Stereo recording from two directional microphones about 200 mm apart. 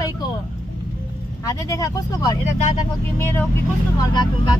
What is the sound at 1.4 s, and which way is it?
Speech, 15° left (ahead or behind).